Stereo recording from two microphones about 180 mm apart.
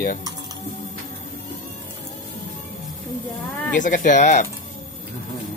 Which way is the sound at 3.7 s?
45° left (ahead or behind).